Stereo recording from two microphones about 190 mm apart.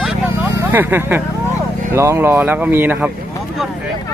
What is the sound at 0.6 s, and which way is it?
Speech, 10° right (ahead or behind).